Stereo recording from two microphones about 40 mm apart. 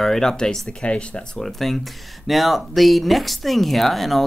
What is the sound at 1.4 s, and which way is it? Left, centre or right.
Speech, centre.